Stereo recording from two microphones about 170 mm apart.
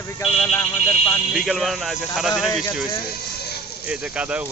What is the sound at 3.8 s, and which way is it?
Speech, 5° right (ahead or behind).